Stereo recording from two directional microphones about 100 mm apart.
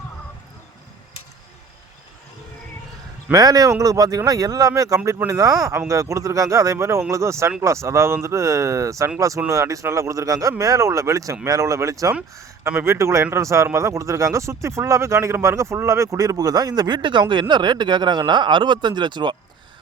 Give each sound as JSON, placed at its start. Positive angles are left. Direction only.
{"t": 3.3, "sound": "speech", "side_deg": -40}